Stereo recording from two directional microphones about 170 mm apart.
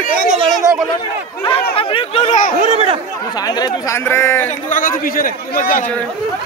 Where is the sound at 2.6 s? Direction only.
35° right (ahead or behind).